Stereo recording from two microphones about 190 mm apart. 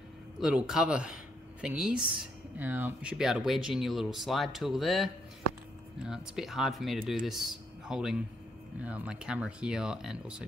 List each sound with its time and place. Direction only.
0.4 s speech: 5° right (ahead or behind)